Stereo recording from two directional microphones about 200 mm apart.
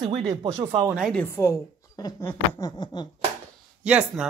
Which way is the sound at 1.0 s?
Centre (ahead or behind).